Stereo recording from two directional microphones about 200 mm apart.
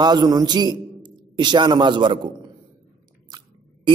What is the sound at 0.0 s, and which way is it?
A man's voice, 20° right (ahead or behind).